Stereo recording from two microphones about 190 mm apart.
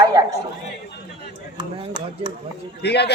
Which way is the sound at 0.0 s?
20° right (ahead or behind).